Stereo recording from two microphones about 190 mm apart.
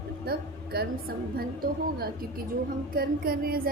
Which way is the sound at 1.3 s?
50° right (ahead or behind).